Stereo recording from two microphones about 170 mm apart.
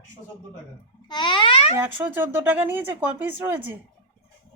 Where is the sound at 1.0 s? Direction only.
25° left (ahead or behind).